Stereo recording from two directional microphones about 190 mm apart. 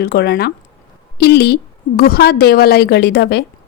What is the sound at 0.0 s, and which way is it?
Speech, 55° left (ahead or behind).